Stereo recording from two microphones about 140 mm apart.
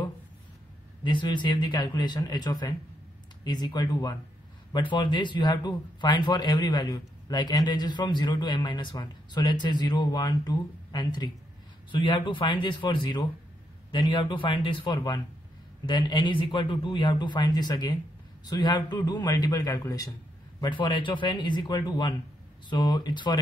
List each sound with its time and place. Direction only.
1.0 s a man's voice: 35° left (ahead or behind)